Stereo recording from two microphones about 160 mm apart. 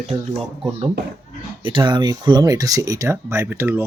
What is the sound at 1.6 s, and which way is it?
Speech, 30° right (ahead or behind).